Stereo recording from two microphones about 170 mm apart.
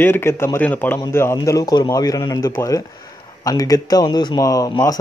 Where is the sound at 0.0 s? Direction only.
15° left (ahead or behind).